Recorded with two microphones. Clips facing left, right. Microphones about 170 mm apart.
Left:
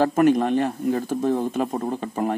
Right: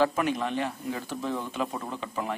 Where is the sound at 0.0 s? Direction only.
45° left (ahead or behind).